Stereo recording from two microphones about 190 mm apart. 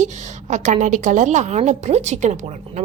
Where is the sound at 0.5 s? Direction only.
40° right (ahead or behind).